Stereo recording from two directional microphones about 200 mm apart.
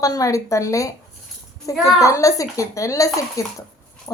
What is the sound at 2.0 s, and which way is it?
A woman's voice, 15° left (ahead or behind).